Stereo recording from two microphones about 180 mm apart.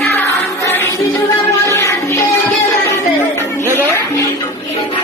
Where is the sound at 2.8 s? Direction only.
15° left (ahead or behind).